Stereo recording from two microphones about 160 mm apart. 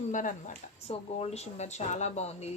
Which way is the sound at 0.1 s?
50° left (ahead or behind).